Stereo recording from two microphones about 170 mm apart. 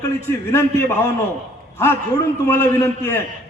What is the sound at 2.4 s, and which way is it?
Speech, 15° left (ahead or behind).